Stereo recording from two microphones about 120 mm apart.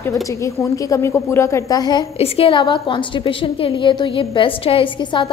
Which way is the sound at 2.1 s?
55° left (ahead or behind).